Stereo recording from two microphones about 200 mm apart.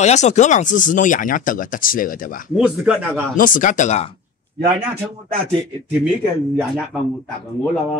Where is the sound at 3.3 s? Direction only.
40° left (ahead or behind).